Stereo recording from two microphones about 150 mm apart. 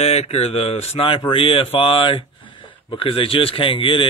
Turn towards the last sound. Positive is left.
turn(degrees=35)  # may be behind; listen again after turning